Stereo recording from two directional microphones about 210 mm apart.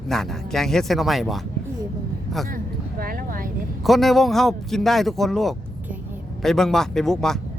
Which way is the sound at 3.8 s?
Centre (ahead or behind).